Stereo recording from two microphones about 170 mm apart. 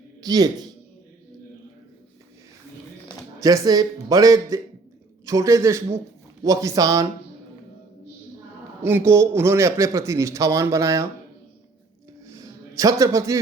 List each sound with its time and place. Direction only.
0.2 s a man's voice: 20° right (ahead or behind)
3.4 s a man's voice: 20° right (ahead or behind)
8.8 s a man's voice: 15° right (ahead or behind)
12.3 s a sound: 20° right (ahead or behind)